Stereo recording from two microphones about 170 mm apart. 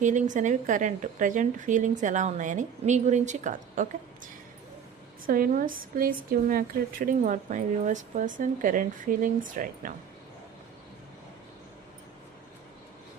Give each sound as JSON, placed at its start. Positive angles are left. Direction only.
{"t": 0.0, "sound": "a woman's voice", "side_deg": -45}